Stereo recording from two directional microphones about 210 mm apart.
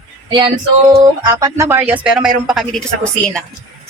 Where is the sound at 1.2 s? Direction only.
15° right (ahead or behind); by 3.4 s 5° left (ahead or behind).